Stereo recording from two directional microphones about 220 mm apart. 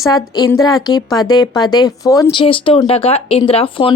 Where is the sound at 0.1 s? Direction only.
15° left (ahead or behind).